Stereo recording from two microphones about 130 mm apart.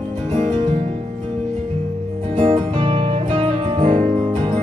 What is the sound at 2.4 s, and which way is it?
Music, 40° right (ahead or behind).